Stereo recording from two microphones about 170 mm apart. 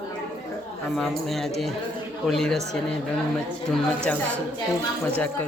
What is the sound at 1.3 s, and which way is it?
Speech, centre (ahead or behind).